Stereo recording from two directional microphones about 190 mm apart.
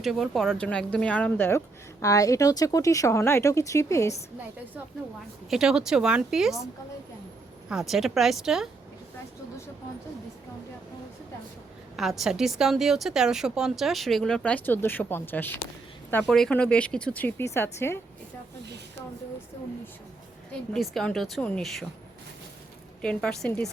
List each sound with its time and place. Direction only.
0.0 s speech: centre (ahead or behind); by 4.2 s 15° left (ahead or behind)
5.5 s speech: 5° right (ahead or behind)
7.7 s speech: centre (ahead or behind)
11.9 s speech: centre (ahead or behind)
20.7 s speech: centre (ahead or behind)
23.0 s speech: 5° left (ahead or behind)